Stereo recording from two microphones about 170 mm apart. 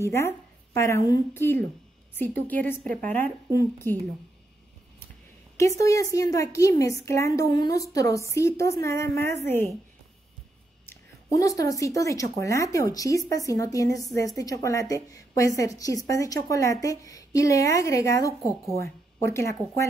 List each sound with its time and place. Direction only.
0.0 s a woman's voice: 15° left (ahead or behind)
5.6 s a woman's voice: 20° left (ahead or behind)
10.9 s a woman's voice: 20° left (ahead or behind)